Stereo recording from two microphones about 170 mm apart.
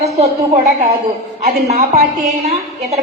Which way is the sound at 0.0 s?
40° right (ahead or behind).